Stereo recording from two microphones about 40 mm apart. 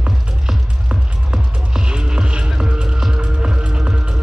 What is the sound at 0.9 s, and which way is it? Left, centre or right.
Music, right.